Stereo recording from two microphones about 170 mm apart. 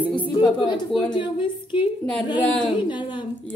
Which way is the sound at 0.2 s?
25° left (ahead or behind).